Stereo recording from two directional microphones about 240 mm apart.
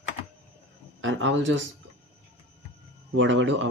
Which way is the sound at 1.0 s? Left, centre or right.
Right.